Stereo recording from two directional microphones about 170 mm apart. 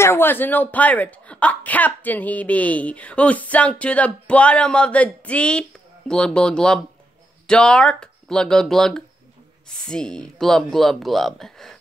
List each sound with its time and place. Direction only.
0.0 s speech: 15° left (ahead or behind)